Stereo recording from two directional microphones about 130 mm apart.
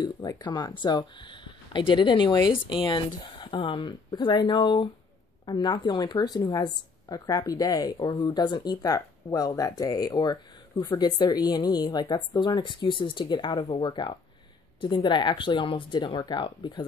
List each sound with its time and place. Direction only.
0.0 s speech: 30° left (ahead or behind)